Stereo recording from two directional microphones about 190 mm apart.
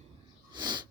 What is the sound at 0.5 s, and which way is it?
Sneeze, 20° right (ahead or behind).